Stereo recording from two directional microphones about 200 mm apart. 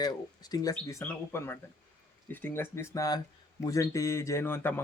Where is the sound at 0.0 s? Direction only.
20° left (ahead or behind).